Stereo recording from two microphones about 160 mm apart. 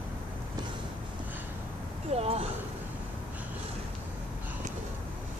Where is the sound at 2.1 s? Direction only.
40° right (ahead or behind).